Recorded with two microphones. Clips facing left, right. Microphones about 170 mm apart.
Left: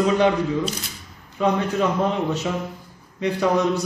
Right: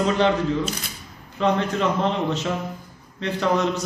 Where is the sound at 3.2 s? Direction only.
10° left (ahead or behind).